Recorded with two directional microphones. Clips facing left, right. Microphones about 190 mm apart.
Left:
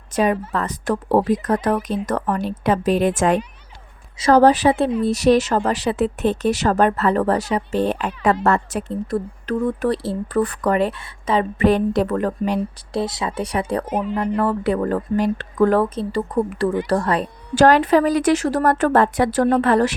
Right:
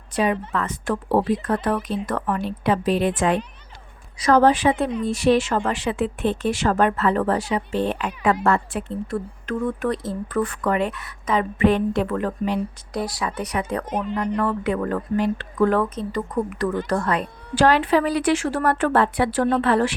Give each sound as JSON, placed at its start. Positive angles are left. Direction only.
{"t": 0.1, "sound": "speech", "side_deg": 45}
{"t": 4.2, "sound": "speech", "side_deg": 35}
{"t": 12.9, "sound": "speech", "side_deg": 25}
{"t": 13.8, "sound": "speech", "side_deg": 10}
{"t": 14.3, "sound": "speech", "side_deg": 35}